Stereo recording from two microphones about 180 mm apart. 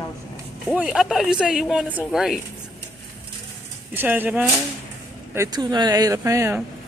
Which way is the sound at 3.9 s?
10° right (ahead or behind).